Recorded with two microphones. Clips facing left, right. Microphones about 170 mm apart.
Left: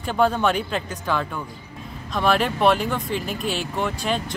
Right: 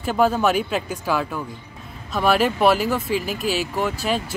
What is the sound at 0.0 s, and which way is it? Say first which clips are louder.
Speech: right 1 dB; 5° right (ahead or behind).